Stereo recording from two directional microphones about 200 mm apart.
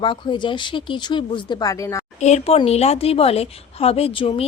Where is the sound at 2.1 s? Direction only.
35° left (ahead or behind).